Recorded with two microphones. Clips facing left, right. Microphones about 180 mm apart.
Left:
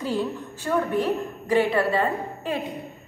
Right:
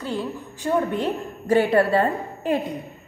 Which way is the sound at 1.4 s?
40° right (ahead or behind).